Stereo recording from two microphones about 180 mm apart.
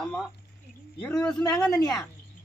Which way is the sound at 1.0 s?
15° left (ahead or behind).